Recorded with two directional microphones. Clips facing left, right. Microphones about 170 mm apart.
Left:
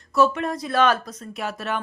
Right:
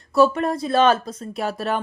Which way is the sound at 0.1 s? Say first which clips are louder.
Right 3 dB; 35° right (ahead or behind).